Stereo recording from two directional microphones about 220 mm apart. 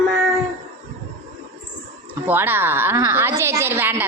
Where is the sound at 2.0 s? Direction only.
10° right (ahead or behind).